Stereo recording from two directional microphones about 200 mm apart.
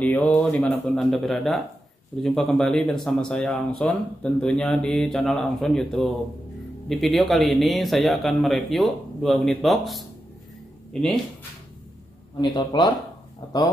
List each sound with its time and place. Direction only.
0.0 s speech: 5° left (ahead or behind)
12.4 s speech: 20° left (ahead or behind)